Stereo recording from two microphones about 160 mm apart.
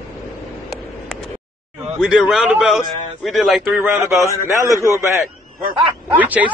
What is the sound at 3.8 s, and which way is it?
A man's voice, 15° right (ahead or behind).